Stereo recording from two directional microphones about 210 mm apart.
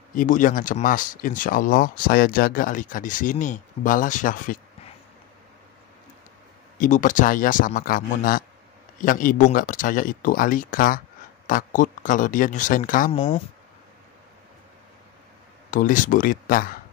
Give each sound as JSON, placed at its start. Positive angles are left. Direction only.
{"t": 0.1, "sound": "speech", "side_deg": 40}
{"t": 6.8, "sound": "speech", "side_deg": 35}
{"t": 13.1, "sound": "speech", "side_deg": 25}
{"t": 15.7, "sound": "speech", "side_deg": 40}